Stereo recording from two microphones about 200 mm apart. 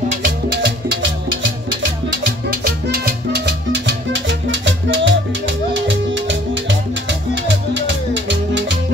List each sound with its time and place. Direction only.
0.5 s music: 60° right (ahead or behind)
2.2 s music: 50° right (ahead or behind); by 7.2 s 65° right (ahead or behind)